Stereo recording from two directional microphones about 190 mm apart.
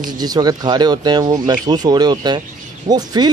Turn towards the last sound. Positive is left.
turn(degrees=-20)  # may be behind; listen again after turning